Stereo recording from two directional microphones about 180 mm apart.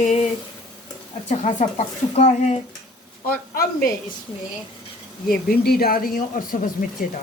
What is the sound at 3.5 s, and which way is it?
Speech, 55° left (ahead or behind).